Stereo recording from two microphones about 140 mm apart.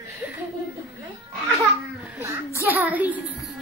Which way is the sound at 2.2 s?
15° right (ahead or behind).